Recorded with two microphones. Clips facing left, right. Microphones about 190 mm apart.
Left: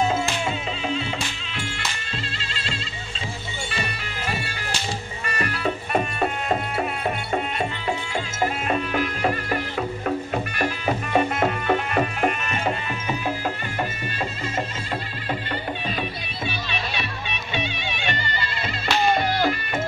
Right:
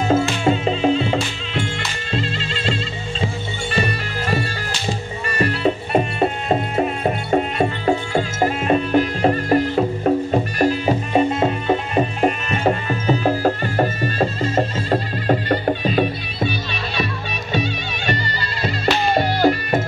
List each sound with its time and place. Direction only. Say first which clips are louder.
0.1 s music: right 8 dB; 40° right (ahead or behind)
5.4 s music: right 8 dB; 30° right (ahead or behind)